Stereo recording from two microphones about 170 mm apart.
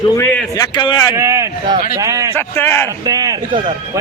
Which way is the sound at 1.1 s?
15° right (ahead or behind).